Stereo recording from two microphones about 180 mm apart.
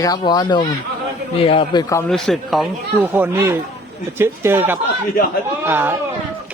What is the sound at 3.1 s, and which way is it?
A man's voice, 10° right (ahead or behind).